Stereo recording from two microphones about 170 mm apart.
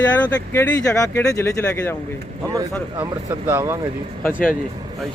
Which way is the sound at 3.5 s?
15° right (ahead or behind).